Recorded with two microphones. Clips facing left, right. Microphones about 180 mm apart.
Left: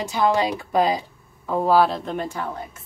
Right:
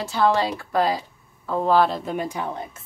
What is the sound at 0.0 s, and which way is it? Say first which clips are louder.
Speech: even; 15° left (ahead or behind).